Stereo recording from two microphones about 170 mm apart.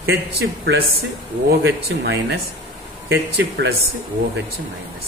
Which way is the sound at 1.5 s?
80° right.